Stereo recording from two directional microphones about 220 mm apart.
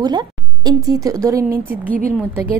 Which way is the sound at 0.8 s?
15° right (ahead or behind).